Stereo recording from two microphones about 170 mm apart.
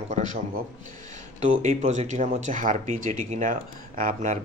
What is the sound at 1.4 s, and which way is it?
Speech, 45° right (ahead or behind).